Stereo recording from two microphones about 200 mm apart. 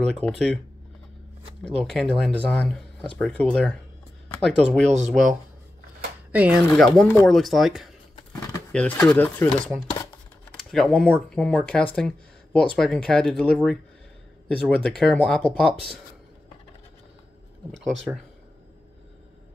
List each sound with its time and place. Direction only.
0.0 s speech: 5° left (ahead or behind)
1.6 s speech: 5° left (ahead or behind)
4.8 s speech: 35° right (ahead or behind)
6.3 s speech: 5° right (ahead or behind)
10.5 s speech: centre (ahead or behind)